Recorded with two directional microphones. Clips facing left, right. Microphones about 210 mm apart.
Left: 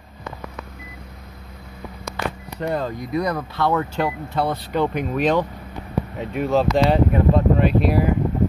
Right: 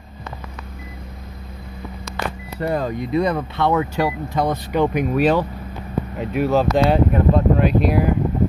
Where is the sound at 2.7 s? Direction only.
10° right (ahead or behind).